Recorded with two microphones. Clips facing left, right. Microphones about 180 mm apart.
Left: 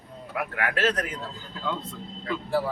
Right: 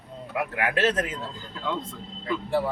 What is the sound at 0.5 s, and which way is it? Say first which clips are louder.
Speech: right 2 dB; 20° right (ahead or behind).